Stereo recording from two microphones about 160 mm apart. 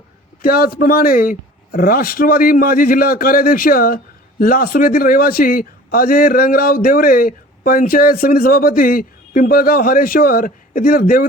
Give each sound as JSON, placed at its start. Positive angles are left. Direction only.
{"t": 0.4, "sound": "speech", "side_deg": 65}